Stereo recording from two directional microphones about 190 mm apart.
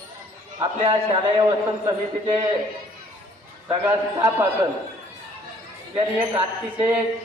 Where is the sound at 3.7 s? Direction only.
15° right (ahead or behind).